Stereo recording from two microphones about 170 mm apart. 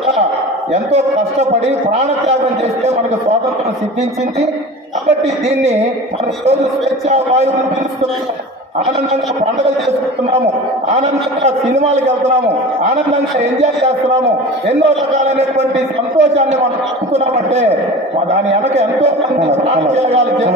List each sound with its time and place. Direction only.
1.9 s a man's voice: 40° right (ahead or behind)
5.2 s a man's voice: 40° right (ahead or behind)
11.4 s a man's voice: 45° right (ahead or behind)